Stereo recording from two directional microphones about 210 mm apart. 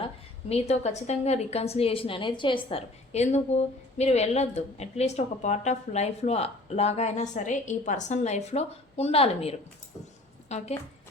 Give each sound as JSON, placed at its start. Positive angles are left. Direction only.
{"t": 0.0, "sound": "a woman's voice", "side_deg": 30}